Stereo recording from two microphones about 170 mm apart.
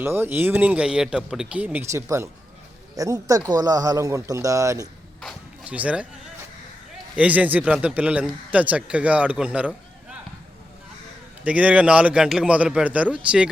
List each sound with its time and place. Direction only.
0.0 s speech: 15° right (ahead or behind)
5.2 s a sound: 10° right (ahead or behind)
7.2 s a man's voice: 10° right (ahead or behind)
11.4 s speech: 5° right (ahead or behind)